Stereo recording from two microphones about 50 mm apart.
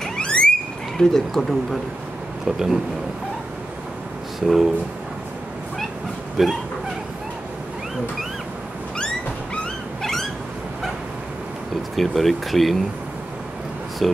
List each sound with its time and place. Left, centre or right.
0.0 s a sound: centre
0.9 s speech: centre
2.4 s speech: centre
4.4 s speech: centre
6.4 s speech: centre
11.7 s speech: centre
14.0 s speech: centre